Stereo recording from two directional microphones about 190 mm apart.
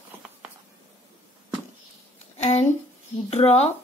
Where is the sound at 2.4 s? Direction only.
35° left (ahead or behind).